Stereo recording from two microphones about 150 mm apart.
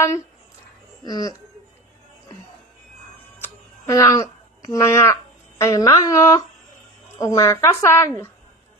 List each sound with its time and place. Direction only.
1.0 s a woman's voice: 25° left (ahead or behind)
3.8 s a woman's voice: 20° left (ahead or behind)